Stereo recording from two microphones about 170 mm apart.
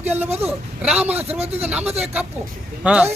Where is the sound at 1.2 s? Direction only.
35° right (ahead or behind).